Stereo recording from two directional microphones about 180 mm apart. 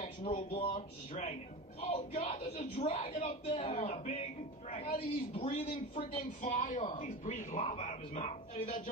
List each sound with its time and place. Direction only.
0.0 s speech: 35° left (ahead or behind)
0.7 s speech: 45° left (ahead or behind)